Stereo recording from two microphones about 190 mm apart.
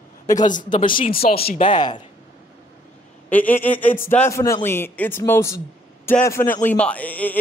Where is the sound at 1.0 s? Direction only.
50° left (ahead or behind).